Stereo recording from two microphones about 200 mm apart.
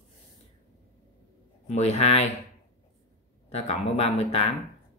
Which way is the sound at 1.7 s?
35° left (ahead or behind).